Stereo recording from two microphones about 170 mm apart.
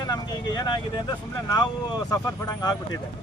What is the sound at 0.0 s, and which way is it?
Speech, 25° left (ahead or behind).